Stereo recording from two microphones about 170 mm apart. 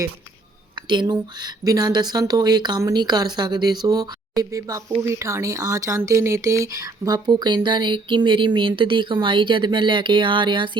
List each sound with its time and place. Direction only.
0.8 s speech: 25° right (ahead or behind)